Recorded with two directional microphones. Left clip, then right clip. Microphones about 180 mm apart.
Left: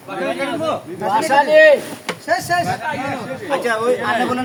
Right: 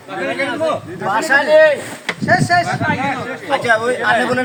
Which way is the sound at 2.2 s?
35° left (ahead or behind).